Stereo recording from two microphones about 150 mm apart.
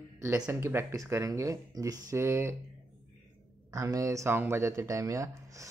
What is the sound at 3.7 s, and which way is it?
Speech, 20° right (ahead or behind).